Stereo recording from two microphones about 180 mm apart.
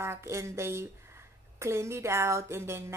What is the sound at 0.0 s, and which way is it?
A woman's voice, 15° right (ahead or behind).